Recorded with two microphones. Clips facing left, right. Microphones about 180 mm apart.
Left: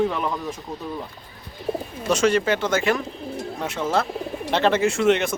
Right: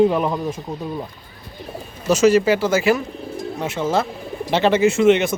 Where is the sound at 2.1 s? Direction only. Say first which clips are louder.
Right 5 dB; 5° right (ahead or behind).